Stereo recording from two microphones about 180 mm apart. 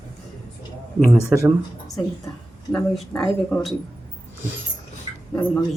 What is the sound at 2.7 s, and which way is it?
Speech, centre (ahead or behind).